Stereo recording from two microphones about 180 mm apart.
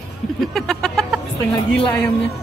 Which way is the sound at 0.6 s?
Centre (ahead or behind).